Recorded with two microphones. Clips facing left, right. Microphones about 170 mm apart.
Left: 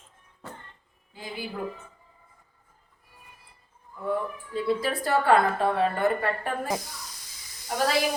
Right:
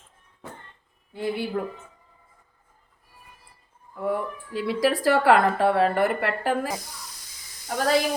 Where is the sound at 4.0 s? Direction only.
90° right.